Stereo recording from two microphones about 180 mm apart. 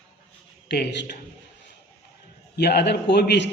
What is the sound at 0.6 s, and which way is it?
Speech, 70° left (ahead or behind).